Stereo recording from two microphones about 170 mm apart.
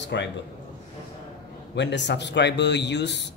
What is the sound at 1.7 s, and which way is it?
A man's voice, 90° left.